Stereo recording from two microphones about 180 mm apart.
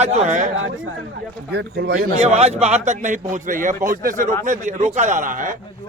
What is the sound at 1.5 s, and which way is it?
A man's voice, 65° right (ahead or behind).